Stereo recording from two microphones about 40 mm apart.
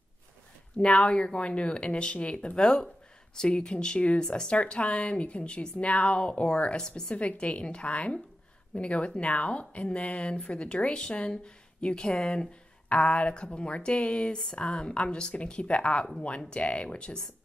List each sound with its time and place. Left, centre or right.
0.7 s speech: left